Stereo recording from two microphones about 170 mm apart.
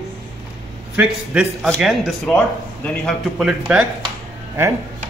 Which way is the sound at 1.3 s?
5° right (ahead or behind).